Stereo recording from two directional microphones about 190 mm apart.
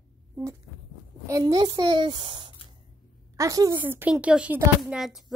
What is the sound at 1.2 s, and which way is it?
A woman's voice, 20° right (ahead or behind).